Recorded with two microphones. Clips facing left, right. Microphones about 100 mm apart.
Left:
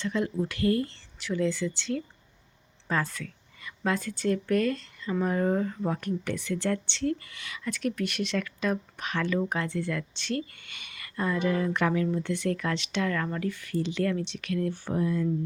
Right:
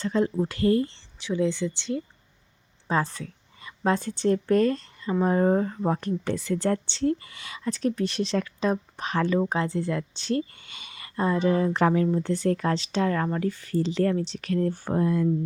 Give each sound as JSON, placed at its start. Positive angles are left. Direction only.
{"t": 0.0, "sound": "speech", "side_deg": -35}
{"t": 2.8, "sound": "a woman's voice", "side_deg": -30}